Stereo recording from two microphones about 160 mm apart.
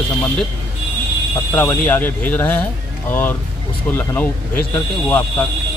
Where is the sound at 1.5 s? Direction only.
10° left (ahead or behind).